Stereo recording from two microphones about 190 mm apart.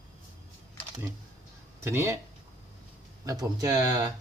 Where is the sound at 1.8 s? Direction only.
15° right (ahead or behind).